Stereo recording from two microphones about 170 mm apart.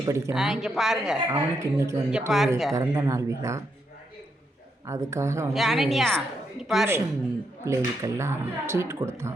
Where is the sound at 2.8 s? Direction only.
20° right (ahead or behind).